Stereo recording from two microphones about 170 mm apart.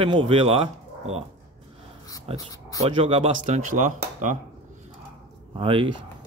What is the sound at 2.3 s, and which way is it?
Speech, 35° right (ahead or behind).